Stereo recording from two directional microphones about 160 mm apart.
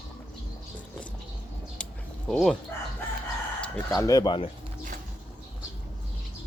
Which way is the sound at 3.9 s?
20° left (ahead or behind).